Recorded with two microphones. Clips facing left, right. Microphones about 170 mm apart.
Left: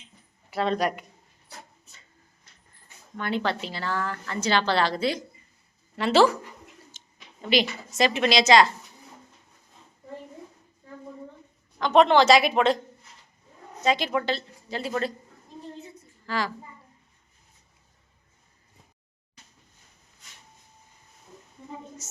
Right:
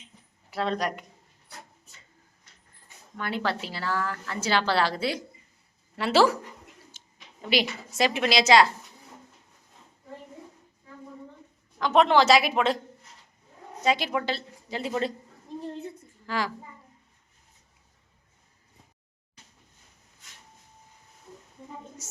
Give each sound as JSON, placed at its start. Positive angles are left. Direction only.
{"t": 0.5, "sound": "a woman's voice", "side_deg": 0}
{"t": 3.2, "sound": "a woman's voice", "side_deg": -5}
{"t": 7.0, "sound": "a sound", "side_deg": -10}
{"t": 7.4, "sound": "a woman's voice", "side_deg": -10}
{"t": 11.8, "sound": "a woman's voice", "side_deg": -5}
{"t": 13.8, "sound": "a woman's voice", "side_deg": -10}
{"t": 16.2, "sound": "a child's voice", "side_deg": -10}
{"t": 22.0, "sound": "speech", "side_deg": -10}